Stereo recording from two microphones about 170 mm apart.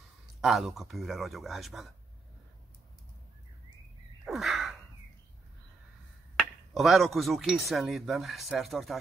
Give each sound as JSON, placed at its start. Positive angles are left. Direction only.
{"t": 0.4, "sound": "speech", "side_deg": 0}
{"t": 4.2, "sound": "a sound", "side_deg": 0}
{"t": 6.7, "sound": "speech", "side_deg": 0}